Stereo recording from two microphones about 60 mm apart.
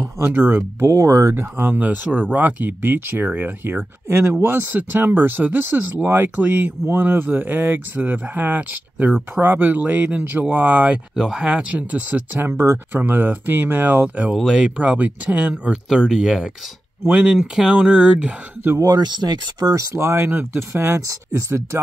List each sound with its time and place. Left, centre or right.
0.2 s speech: right
0.7 s speech: right
1.3 s speech: right
4.1 s speech: right
11.1 s speech: centre
11.7 s speech: right
14.0 s speech: right
17.0 s speech: right
17.4 s speech: centre
17.7 s speech: right
18.8 s speech: right
20.0 s speech: right